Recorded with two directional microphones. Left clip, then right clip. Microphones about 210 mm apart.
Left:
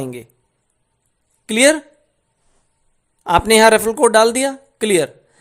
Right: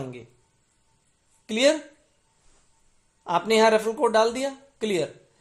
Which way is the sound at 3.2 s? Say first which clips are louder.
Left 9 dB; 45° left (ahead or behind).